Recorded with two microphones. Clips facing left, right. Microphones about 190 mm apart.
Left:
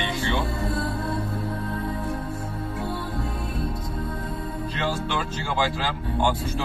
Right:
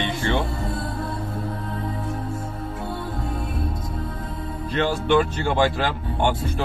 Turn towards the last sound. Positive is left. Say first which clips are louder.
# right 1 dB
turn(degrees=-60)  # may be behind; listen again after turning